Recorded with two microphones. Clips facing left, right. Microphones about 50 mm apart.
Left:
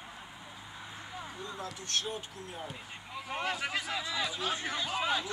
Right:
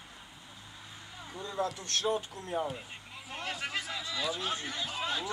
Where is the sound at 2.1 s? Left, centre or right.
Right.